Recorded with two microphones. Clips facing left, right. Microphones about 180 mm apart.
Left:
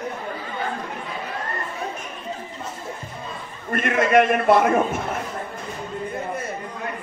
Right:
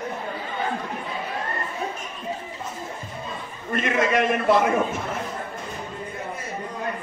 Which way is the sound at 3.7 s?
55° left (ahead or behind).